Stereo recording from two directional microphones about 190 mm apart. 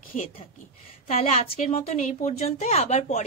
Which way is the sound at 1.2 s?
35° left (ahead or behind).